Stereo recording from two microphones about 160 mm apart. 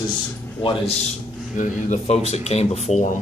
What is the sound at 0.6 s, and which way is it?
Speech, 40° left (ahead or behind).